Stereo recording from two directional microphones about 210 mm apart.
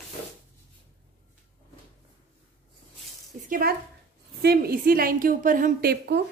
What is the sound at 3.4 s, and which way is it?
A woman's voice, 45° right (ahead or behind).